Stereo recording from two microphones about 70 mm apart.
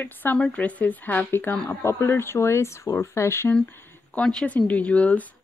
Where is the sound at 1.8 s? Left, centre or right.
Left.